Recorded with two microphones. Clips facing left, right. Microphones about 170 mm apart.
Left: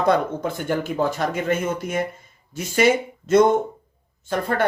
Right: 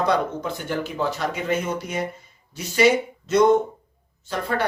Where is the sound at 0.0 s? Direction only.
50° left (ahead or behind).